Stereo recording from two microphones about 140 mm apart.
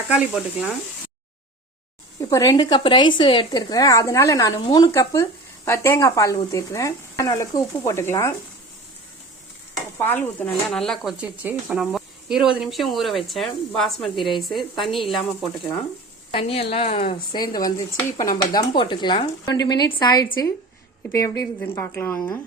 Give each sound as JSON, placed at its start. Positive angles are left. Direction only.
{"t": 0.1, "sound": "speech", "side_deg": -5}
{"t": 2.3, "sound": "speech", "side_deg": 25}
{"t": 4.9, "sound": "speech", "side_deg": 20}
{"t": 10.0, "sound": "a woman's voice", "side_deg": 15}
{"t": 16.3, "sound": "a woman's voice", "side_deg": 40}
{"t": 17.3, "sound": "a woman's voice", "side_deg": 30}